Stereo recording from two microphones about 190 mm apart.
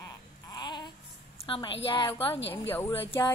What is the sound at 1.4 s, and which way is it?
Speech, 30° left (ahead or behind).